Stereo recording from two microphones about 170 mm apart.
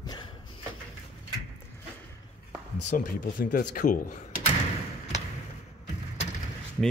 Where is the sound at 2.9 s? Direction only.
55° left (ahead or behind).